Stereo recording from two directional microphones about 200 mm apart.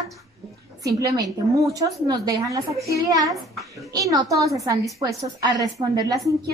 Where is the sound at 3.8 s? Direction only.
15° right (ahead or behind).